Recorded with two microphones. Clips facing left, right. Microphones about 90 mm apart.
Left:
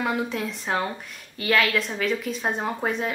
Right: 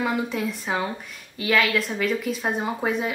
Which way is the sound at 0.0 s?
Centre (ahead or behind).